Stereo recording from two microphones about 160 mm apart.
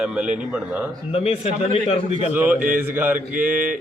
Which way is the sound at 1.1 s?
40° left (ahead or behind).